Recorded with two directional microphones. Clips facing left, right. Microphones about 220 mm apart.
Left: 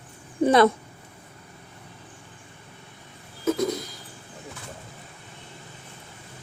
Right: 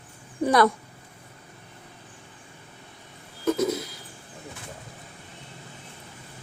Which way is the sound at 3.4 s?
Centre (ahead or behind).